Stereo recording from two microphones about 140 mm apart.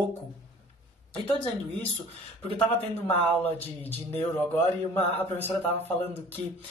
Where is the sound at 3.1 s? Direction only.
15° left (ahead or behind).